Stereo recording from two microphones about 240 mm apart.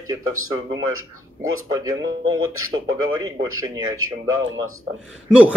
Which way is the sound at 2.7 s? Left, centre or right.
Centre.